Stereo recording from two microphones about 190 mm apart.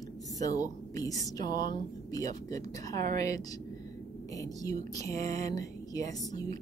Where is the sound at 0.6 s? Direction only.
20° left (ahead or behind).